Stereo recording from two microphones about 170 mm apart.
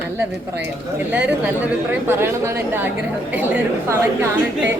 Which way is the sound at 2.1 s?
15° right (ahead or behind).